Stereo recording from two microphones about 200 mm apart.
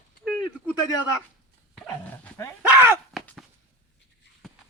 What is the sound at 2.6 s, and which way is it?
Speech, 10° right (ahead or behind).